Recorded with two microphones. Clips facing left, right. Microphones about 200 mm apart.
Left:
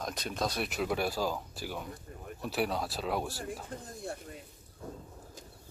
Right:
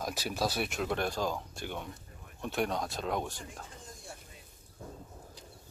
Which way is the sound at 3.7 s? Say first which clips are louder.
Left 9 dB; 60° left (ahead or behind).